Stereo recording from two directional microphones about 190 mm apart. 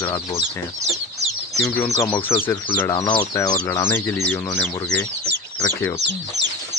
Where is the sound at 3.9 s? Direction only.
10° left (ahead or behind).